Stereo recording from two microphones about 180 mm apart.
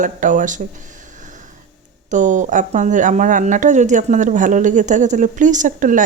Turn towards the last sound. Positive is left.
turn(degrees=-45)  # may be behind; listen again after turning